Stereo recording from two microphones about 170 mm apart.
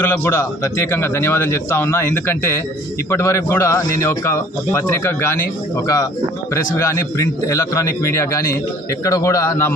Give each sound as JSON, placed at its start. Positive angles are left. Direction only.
{"t": 0.0, "sound": "a man's voice", "side_deg": 10}
{"t": 6.5, "sound": "a man's voice", "side_deg": 15}